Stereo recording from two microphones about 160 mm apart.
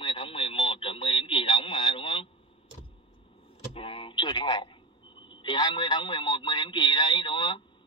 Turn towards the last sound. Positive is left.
turn(degrees=30)  # may be behind; listen again after turning